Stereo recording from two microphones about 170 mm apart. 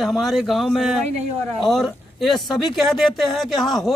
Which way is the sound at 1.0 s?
40° right (ahead or behind).